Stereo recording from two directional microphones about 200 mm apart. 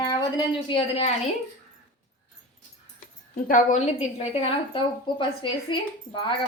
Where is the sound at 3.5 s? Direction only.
40° left (ahead or behind).